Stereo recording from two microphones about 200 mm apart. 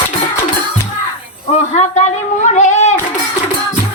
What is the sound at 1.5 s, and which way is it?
A woman's voice, 35° left (ahead or behind).